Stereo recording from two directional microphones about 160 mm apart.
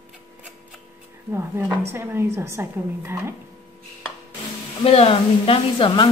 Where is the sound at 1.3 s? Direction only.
15° right (ahead or behind).